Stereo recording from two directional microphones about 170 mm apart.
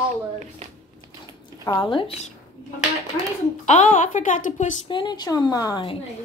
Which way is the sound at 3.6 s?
45° left (ahead or behind).